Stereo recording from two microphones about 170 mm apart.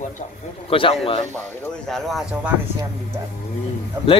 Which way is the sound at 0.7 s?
30° left (ahead or behind).